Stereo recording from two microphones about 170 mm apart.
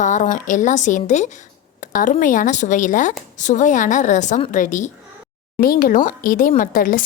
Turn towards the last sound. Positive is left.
turn(degrees=55)  # may be behind; listen again after turning